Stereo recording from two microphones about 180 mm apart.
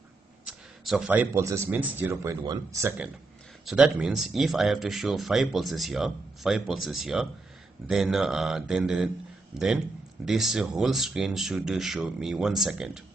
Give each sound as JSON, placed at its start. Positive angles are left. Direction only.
{"t": 0.8, "sound": "speech", "side_deg": -5}
{"t": 3.6, "sound": "speech", "side_deg": -5}
{"t": 10.2, "sound": "speech", "side_deg": 0}